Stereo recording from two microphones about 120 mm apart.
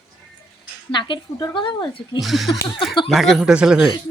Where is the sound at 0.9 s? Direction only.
40° left (ahead or behind).